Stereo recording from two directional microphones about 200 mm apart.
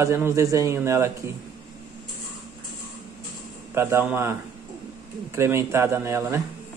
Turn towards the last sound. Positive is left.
turn(degrees=-15)  # may be behind; listen again after turning